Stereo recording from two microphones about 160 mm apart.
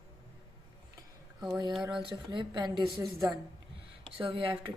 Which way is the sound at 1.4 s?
25° right (ahead or behind).